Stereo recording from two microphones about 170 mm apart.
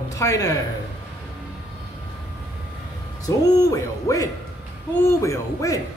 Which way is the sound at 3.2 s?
20° left (ahead or behind).